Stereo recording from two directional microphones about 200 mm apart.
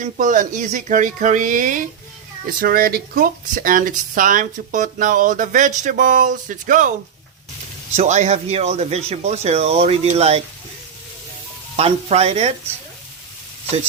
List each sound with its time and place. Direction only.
0.0 s speech: 40° right (ahead or behind)
7.9 s speech: 35° right (ahead or behind)
11.8 s speech: 30° right (ahead or behind)